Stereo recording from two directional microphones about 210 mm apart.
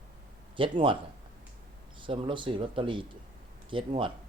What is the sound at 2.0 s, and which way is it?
A man's voice, 25° right (ahead or behind).